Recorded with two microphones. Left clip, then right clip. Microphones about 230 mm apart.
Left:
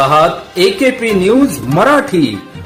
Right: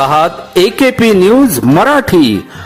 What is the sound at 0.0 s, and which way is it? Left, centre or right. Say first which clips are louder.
A man's voice: even; right.